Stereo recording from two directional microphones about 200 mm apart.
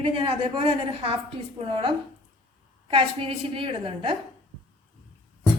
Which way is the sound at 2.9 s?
25° right (ahead or behind).